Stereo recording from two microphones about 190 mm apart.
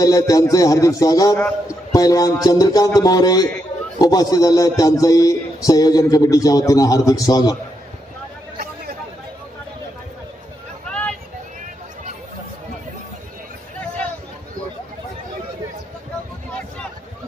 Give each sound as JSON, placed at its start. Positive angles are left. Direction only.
{"t": 0.0, "sound": "music", "side_deg": 20}
{"t": 1.4, "sound": "a man's voice", "side_deg": 20}
{"t": 10.9, "sound": "vehicle", "side_deg": 5}